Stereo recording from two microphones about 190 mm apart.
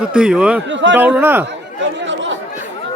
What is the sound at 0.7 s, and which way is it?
Speech, 70° right (ahead or behind).